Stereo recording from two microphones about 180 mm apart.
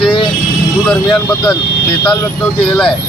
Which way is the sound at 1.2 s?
5° left (ahead or behind).